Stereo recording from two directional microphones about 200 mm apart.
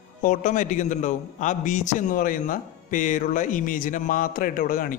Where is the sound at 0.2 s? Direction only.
40° left (ahead or behind).